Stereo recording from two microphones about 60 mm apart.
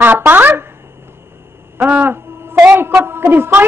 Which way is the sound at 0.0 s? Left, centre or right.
Right.